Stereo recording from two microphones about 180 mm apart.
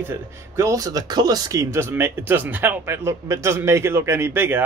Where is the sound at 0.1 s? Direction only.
15° right (ahead or behind).